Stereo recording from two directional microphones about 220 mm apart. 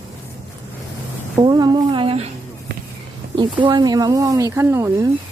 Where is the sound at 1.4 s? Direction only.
20° right (ahead or behind).